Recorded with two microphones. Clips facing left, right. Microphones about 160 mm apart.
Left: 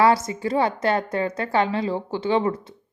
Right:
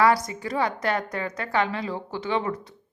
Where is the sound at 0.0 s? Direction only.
25° left (ahead or behind).